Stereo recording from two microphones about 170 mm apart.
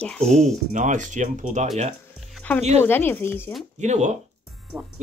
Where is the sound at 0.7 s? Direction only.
45° right (ahead or behind).